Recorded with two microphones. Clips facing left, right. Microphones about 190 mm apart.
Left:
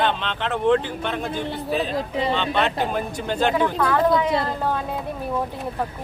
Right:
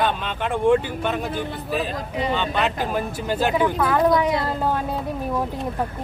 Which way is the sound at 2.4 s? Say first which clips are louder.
Left 1 dB; 5° right (ahead or behind).